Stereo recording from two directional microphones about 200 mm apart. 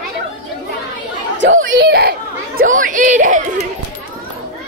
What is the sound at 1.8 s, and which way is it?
Children playing, 55° right (ahead or behind).